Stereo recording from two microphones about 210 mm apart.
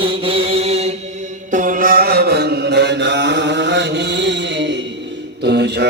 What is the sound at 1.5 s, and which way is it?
Mantra, 40° right (ahead or behind).